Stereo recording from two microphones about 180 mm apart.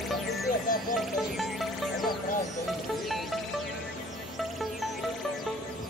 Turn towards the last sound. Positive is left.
turn(degrees=0)  # may be behind; listen again after turning